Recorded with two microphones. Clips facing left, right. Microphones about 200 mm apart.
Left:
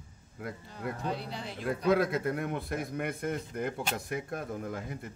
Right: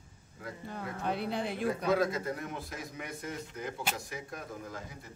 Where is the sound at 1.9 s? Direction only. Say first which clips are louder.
Left 5 dB; 60° left (ahead or behind).